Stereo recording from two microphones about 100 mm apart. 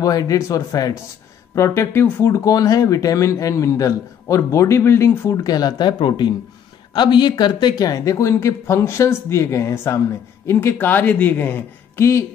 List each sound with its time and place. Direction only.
0.0 s speech: 35° left (ahead or behind)